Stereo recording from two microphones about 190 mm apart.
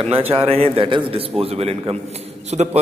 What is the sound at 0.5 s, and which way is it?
A man's voice, 30° right (ahead or behind).